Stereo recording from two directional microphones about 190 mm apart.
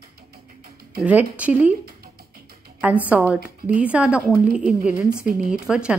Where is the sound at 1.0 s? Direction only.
5° right (ahead or behind).